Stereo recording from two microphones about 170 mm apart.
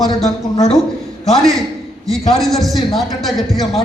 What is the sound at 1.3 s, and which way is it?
A man's voice, centre (ahead or behind).